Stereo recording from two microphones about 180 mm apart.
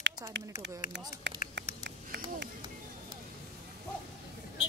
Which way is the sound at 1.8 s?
60° right (ahead or behind).